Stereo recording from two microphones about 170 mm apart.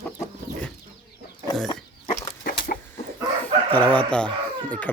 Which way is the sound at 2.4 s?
60° left (ahead or behind).